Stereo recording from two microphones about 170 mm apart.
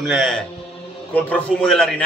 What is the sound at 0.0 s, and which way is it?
A man's voice, centre (ahead or behind).